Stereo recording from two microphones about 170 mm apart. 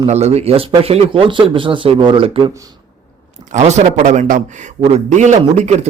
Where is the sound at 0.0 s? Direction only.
40° right (ahead or behind).